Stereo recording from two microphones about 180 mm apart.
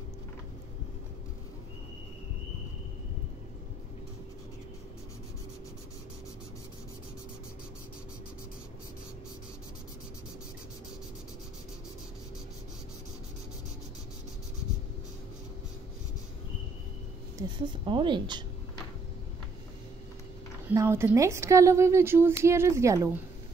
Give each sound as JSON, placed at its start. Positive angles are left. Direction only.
{"t": 17.4, "sound": "a woman's voice", "side_deg": -25}
{"t": 20.6, "sound": "a woman's voice", "side_deg": -15}